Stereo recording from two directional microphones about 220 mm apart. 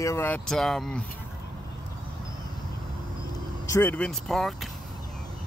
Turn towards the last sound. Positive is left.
turn(degrees=0)  # may be behind; listen again after turning